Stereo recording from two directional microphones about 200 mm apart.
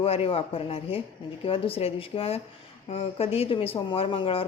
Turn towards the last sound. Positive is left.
turn(degrees=25)  # may be behind; listen again after turning